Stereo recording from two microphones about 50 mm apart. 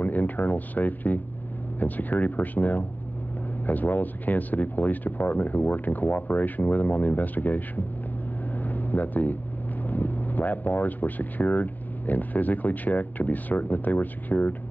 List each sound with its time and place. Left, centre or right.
0.0 s speech: left
8.6 s a sound: left
9.8 s speech: left